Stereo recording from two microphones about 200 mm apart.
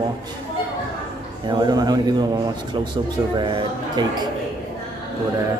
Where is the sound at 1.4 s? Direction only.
20° right (ahead or behind).